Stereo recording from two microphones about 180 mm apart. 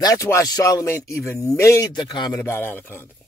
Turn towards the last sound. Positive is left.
turn(degrees=10)  # may be behind; listen again after turning